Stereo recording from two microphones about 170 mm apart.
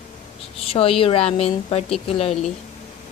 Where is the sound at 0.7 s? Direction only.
35° left (ahead or behind).